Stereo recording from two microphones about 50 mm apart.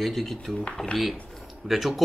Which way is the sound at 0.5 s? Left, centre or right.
Centre.